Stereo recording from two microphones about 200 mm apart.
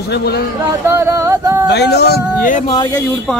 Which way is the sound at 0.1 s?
55° left (ahead or behind).